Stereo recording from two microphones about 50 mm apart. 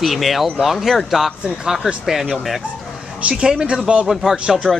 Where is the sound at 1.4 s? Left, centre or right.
Centre.